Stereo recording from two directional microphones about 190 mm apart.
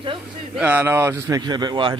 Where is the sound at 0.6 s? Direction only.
10° right (ahead or behind); by 2.0 s 25° right (ahead or behind).